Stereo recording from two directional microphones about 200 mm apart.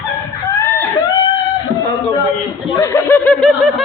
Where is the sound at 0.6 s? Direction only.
10° left (ahead or behind).